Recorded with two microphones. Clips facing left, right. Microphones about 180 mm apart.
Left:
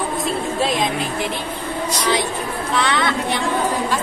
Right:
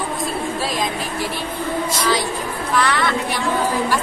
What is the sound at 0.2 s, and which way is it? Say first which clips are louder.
Music: left 2 dB; 25° left (ahead or behind).